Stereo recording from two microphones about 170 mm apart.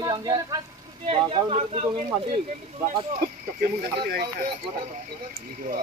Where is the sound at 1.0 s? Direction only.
35° right (ahead or behind).